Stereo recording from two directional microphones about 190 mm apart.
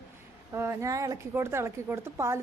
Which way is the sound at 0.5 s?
15° right (ahead or behind).